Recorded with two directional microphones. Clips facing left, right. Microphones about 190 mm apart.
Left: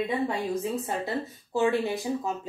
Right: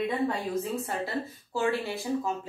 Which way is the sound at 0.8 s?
20° left (ahead or behind).